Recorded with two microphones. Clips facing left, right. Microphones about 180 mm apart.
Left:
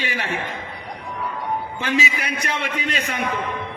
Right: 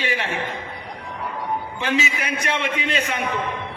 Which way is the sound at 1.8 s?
40° left (ahead or behind).